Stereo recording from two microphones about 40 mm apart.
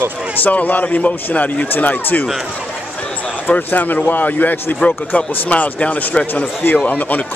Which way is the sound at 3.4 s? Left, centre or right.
Left.